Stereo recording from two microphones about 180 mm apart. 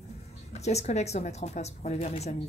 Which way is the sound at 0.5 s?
35° left (ahead or behind).